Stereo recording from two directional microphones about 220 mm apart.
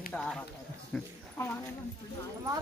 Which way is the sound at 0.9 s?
10° left (ahead or behind).